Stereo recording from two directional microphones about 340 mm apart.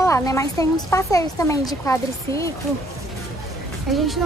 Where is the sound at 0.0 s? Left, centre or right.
Centre.